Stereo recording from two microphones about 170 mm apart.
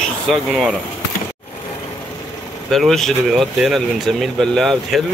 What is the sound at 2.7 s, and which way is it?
Speech, centre (ahead or behind).